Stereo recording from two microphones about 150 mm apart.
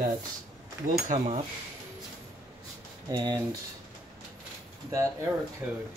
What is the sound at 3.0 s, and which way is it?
Speech, 25° right (ahead or behind).